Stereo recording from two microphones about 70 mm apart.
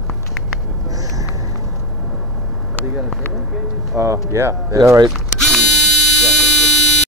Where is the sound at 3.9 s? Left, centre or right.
Right.